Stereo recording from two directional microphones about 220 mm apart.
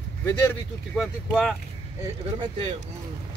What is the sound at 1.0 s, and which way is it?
Speech, centre (ahead or behind).